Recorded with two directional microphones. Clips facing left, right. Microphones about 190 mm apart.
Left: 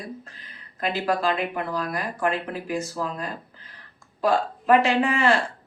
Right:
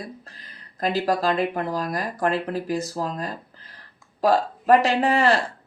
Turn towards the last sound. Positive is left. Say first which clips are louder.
# right 1 dB
turn(degrees=-40)  # may be behind; listen again after turning